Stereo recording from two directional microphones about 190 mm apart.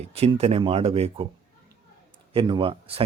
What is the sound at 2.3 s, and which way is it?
Speech, 25° right (ahead or behind).